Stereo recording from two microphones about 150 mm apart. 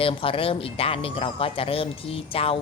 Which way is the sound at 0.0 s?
35° left (ahead or behind).